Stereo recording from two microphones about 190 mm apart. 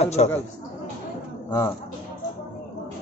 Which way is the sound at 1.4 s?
15° left (ahead or behind).